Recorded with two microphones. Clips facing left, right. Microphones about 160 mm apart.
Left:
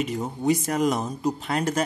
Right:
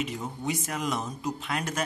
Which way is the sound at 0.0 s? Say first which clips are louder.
Left 6 dB; 40° left (ahead or behind).